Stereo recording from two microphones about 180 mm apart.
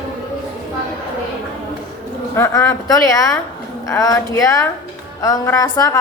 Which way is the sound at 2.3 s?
15° left (ahead or behind).